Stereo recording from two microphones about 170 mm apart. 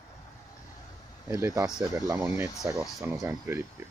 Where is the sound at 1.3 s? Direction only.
15° right (ahead or behind).